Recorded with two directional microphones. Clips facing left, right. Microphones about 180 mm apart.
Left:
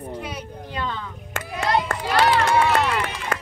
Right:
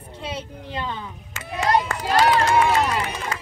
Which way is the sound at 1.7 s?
40° right (ahead or behind).